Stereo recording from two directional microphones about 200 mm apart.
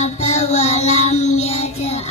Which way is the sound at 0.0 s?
35° left (ahead or behind).